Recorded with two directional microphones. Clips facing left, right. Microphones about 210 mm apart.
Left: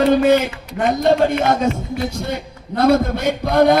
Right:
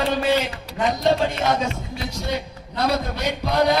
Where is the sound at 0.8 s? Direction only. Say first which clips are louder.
Left 4 dB; 55° left (ahead or behind).